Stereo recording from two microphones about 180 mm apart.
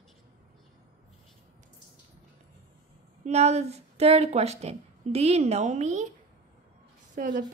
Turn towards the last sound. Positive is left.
turn(degrees=-45)  # may be behind; listen again after turning